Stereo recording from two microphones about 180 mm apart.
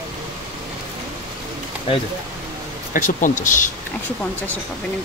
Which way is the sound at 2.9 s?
45° left (ahead or behind).